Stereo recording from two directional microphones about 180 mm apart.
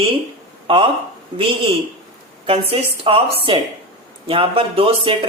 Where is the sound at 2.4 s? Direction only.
30° right (ahead or behind).